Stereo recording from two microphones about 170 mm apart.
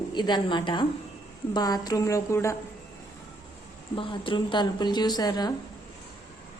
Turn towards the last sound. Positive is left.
turn(degrees=25)  # may be behind; listen again after turning